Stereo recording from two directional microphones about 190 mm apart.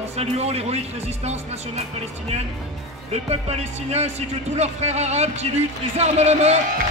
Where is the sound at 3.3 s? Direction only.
35° right (ahead or behind).